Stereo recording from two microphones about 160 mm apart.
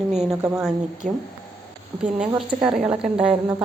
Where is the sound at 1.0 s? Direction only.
50° right (ahead or behind).